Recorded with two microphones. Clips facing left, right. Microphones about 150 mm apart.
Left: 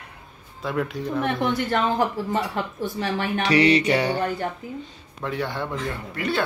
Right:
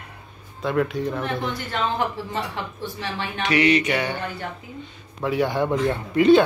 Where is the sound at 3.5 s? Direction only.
35° left (ahead or behind).